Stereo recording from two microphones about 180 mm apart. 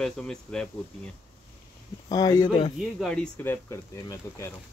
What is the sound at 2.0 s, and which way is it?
Speech, 20° left (ahead or behind).